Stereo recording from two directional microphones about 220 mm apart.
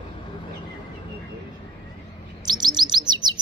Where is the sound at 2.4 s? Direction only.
20° right (ahead or behind).